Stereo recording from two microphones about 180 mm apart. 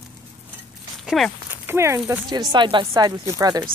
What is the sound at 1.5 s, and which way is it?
Speech, 10° right (ahead or behind).